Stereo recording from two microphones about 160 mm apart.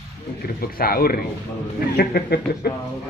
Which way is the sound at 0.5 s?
70° left (ahead or behind).